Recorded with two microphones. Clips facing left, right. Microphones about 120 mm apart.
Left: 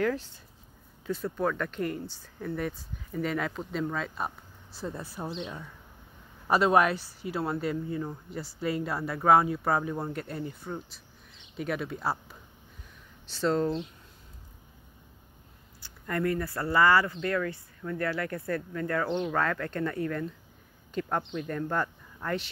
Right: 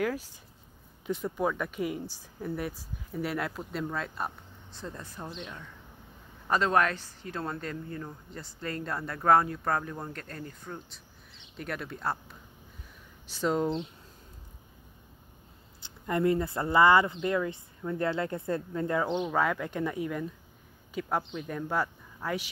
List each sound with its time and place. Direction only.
0.0 s speech: 10° right (ahead or behind); by 10.8 s 10° left (ahead or behind)
11.5 s speech: centre (ahead or behind)
13.3 s speech: 10° right (ahead or behind)
15.8 s speech: 20° right (ahead or behind)